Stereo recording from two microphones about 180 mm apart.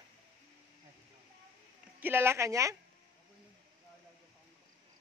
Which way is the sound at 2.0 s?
10° right (ahead or behind).